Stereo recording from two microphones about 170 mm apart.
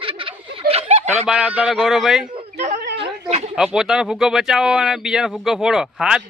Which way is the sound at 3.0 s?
40° right (ahead or behind).